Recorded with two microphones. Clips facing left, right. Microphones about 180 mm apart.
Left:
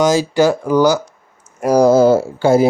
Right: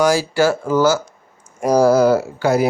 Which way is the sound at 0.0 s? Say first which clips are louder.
Left 2 dB; 20° left (ahead or behind).